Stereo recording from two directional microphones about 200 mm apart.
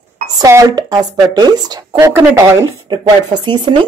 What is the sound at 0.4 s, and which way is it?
Speech, 15° right (ahead or behind).